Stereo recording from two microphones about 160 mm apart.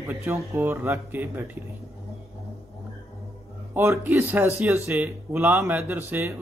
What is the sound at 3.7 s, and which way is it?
A man's voice, 15° right (ahead or behind).